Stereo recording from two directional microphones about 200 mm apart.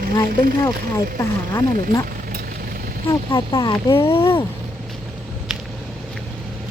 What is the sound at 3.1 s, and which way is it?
Speech, 20° left (ahead or behind).